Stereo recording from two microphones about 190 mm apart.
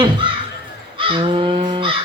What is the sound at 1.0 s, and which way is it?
Speech, 25° right (ahead or behind).